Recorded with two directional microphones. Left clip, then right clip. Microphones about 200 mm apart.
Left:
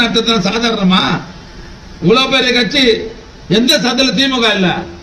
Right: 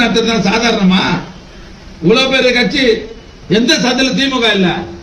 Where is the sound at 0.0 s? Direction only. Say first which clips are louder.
Even; 60° left (ahead or behind).